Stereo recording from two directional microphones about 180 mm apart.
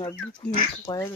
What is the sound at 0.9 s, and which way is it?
Speech, 25° left (ahead or behind).